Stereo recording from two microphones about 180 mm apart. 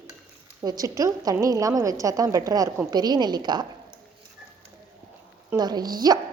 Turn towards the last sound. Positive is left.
turn(degrees=-20)  # may be behind; listen again after turning